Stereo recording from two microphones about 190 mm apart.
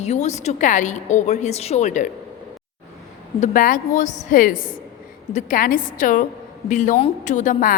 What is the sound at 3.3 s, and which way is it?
A woman's voice, 40° left (ahead or behind).